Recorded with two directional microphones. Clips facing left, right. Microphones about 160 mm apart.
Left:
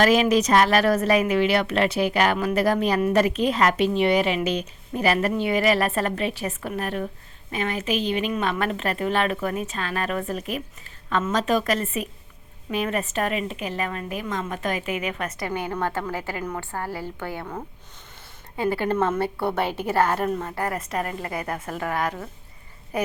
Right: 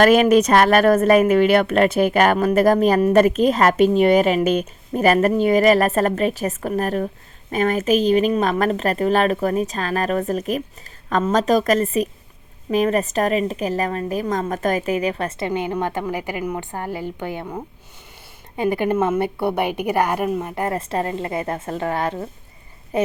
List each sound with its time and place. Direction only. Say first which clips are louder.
0.0 s a woman's voice: right 5 dB; 55° right (ahead or behind); by 23.1 s 25° right (ahead or behind)